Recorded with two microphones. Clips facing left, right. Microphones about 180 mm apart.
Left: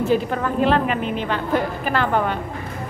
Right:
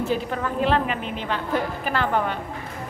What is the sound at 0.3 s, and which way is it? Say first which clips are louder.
A woman's voice: left 3 dB; 55° left (ahead or behind).